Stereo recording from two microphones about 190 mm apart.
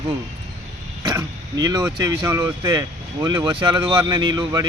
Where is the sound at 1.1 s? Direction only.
20° right (ahead or behind).